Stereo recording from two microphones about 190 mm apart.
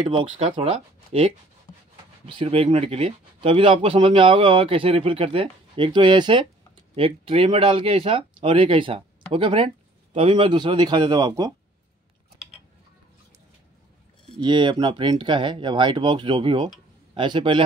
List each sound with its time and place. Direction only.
0.1 s speech: 30° right (ahead or behind)
14.4 s speech: 25° right (ahead or behind)